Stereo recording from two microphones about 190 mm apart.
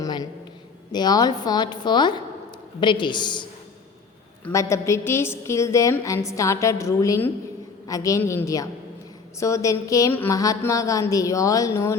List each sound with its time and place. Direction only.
0.0 s a sound: 20° left (ahead or behind)
0.9 s a woman's voice: 20° left (ahead or behind)
4.4 s a woman's voice: 15° left (ahead or behind)